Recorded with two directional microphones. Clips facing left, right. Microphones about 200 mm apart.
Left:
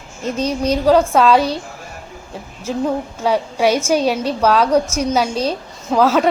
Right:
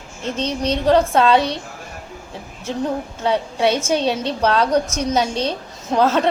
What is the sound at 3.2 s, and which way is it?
A woman's voice, 5° left (ahead or behind).